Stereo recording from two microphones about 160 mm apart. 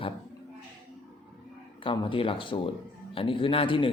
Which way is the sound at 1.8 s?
30° left (ahead or behind).